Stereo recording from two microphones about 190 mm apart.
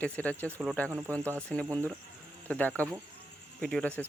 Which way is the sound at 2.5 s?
10° left (ahead or behind).